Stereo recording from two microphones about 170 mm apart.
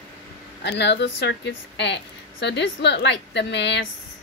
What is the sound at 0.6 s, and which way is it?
A woman's voice, 90° left.